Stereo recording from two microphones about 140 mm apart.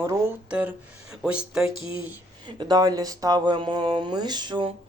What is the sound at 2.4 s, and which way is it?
Speech, 30° right (ahead or behind).